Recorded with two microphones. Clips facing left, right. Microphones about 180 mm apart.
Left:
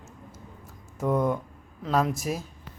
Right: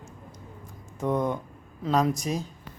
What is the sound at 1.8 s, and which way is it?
Speech, centre (ahead or behind).